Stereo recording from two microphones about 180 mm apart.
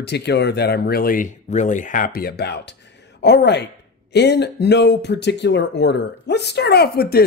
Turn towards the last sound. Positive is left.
turn(degrees=60)  # may be behind; listen again after turning